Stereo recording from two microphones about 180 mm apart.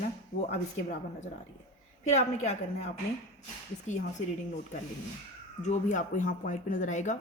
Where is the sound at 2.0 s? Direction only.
40° left (ahead or behind).